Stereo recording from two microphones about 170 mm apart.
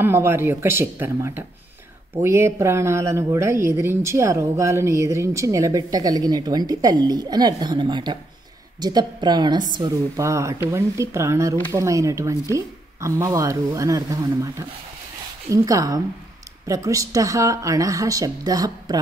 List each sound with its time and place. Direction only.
0.0 s speech: 15° right (ahead or behind)